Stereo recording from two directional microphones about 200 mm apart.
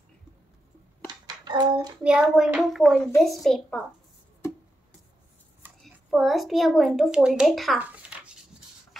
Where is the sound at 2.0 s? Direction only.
5° right (ahead or behind).